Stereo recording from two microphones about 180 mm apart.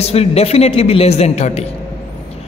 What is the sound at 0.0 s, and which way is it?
A woman's voice, 35° left (ahead or behind).